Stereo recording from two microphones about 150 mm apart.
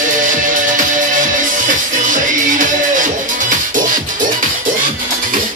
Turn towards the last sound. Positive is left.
turn(degrees=-60)  # may be behind; listen again after turning